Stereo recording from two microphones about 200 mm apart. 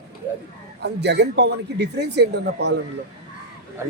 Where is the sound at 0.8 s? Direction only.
55° right (ahead or behind).